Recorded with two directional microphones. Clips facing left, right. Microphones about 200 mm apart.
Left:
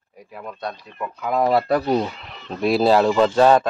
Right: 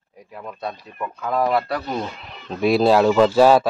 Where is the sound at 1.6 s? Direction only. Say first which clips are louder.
Left 7 dB; 40° left (ahead or behind).